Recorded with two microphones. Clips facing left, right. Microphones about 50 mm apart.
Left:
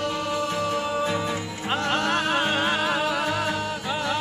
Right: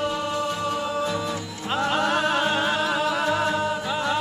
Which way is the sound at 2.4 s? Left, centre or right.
Centre.